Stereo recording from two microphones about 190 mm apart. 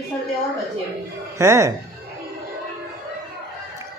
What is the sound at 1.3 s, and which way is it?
Speech, 15° right (ahead or behind).